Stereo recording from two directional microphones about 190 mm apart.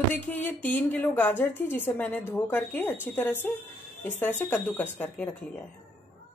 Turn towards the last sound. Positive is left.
turn(degrees=10)  # may be behind; listen again after turning